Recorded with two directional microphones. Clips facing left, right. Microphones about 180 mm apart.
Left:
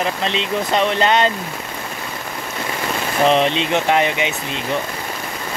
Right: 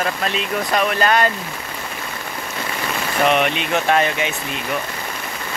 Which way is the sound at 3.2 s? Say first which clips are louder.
Left 3 dB; 30° left (ahead or behind).